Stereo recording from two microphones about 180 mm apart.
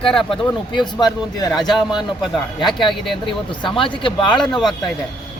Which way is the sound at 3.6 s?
30° left (ahead or behind).